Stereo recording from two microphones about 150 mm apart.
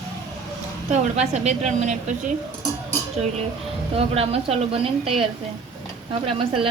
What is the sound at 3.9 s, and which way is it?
Speech, 40° right (ahead or behind).